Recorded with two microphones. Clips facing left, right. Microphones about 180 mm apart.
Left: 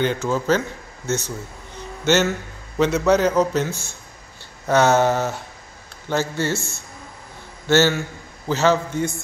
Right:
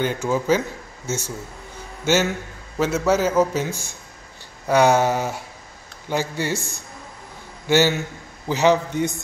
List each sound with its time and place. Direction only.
0.0 s a man's voice: 10° right (ahead or behind)